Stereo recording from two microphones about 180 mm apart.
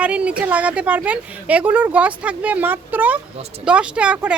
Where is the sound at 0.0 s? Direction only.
5° right (ahead or behind).